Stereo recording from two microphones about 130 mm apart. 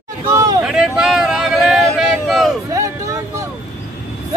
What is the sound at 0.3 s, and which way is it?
Speech, 25° right (ahead or behind).